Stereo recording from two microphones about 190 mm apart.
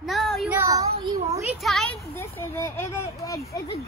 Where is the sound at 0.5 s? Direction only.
15° right (ahead or behind).